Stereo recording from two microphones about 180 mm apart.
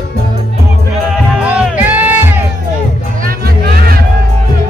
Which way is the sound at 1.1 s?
5° right (ahead or behind).